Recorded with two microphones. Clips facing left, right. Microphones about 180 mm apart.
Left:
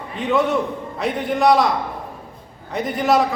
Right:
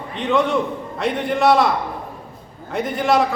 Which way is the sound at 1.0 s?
Centre (ahead or behind).